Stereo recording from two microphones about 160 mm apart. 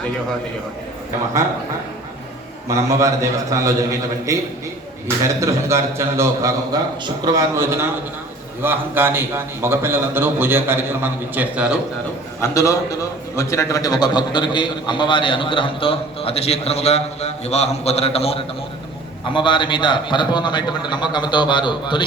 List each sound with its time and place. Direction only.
2.6 s a man's voice: 20° right (ahead or behind)
12.4 s a man's voice: 20° left (ahead or behind)